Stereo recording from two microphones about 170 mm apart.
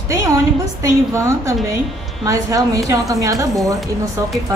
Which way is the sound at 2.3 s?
20° right (ahead or behind).